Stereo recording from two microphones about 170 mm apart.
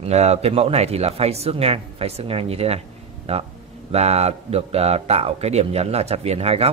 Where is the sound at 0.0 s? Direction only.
40° right (ahead or behind).